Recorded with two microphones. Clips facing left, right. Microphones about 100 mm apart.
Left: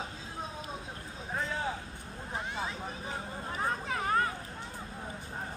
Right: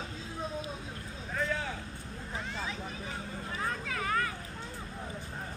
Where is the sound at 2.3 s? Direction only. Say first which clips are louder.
Left 2 dB; 25° left (ahead or behind).